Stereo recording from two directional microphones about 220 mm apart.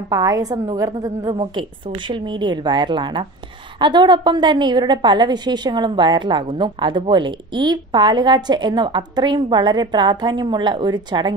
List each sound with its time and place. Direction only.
0.1 s a woman's voice: 15° right (ahead or behind)